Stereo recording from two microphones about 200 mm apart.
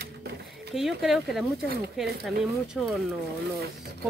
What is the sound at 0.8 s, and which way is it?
Speech, centre (ahead or behind).